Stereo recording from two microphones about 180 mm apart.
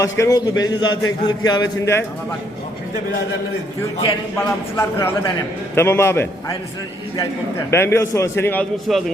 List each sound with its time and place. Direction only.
0.0 s a man's voice: 20° left (ahead or behind)
4.8 s a man's voice: 15° left (ahead or behind)
7.7 s a man's voice: 15° left (ahead or behind)
8.9 s a man's voice: centre (ahead or behind)